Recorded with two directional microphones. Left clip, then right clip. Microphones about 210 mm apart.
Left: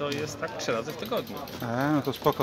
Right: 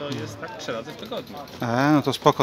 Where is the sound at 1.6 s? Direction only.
40° right (ahead or behind).